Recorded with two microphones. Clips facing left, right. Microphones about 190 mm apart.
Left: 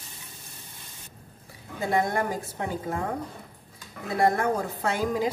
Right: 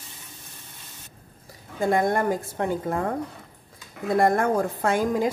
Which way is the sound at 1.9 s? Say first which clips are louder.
Right 4 dB; 50° right (ahead or behind).